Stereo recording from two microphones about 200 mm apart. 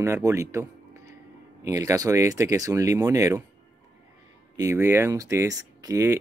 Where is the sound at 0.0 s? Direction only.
15° right (ahead or behind).